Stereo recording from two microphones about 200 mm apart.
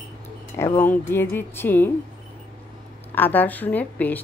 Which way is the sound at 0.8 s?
10° left (ahead or behind).